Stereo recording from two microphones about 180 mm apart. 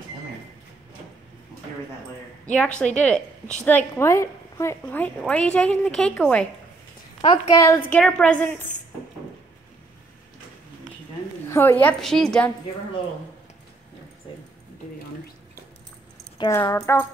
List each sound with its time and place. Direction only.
3.0 s a woman's voice: 5° left (ahead or behind)
7.2 s a woman's voice: 25° left (ahead or behind)
7.7 s a woman's voice: 5° left (ahead or behind)
11.4 s a woman's voice: 15° left (ahead or behind)
16.3 s a woman's voice: 20° left (ahead or behind)